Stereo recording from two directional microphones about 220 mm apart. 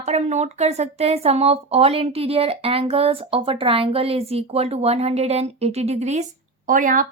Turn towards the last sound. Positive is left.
turn(degrees=-40)  # may be behind; listen again after turning